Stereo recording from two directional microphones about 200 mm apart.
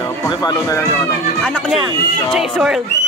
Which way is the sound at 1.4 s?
Centre (ahead or behind).